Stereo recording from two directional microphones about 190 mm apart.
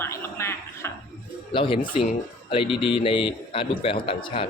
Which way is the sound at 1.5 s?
25° left (ahead or behind).